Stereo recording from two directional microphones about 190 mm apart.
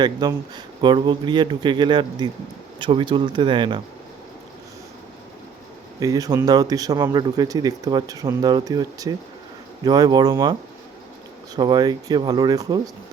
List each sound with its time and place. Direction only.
0.0 s speech: 20° right (ahead or behind)
6.0 s speech: 20° right (ahead or behind)
11.5 s speech: 20° right (ahead or behind)